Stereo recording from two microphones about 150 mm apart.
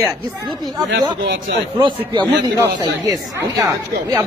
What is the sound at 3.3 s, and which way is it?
Speech, 20° right (ahead or behind).